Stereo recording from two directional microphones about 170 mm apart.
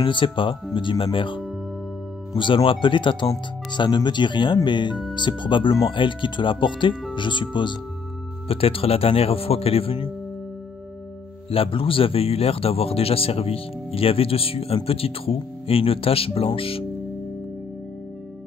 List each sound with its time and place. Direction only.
0.0 s a man's voice: 30° left (ahead or behind)
11.5 s a man's voice: 35° left (ahead or behind)